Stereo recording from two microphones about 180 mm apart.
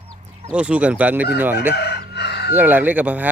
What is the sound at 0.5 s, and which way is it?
Speech, 5° right (ahead or behind).